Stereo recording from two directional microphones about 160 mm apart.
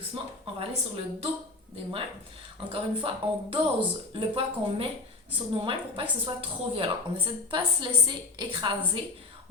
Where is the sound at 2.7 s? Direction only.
35° right (ahead or behind).